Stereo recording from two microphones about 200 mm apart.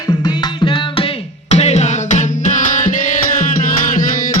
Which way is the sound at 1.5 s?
35° left (ahead or behind).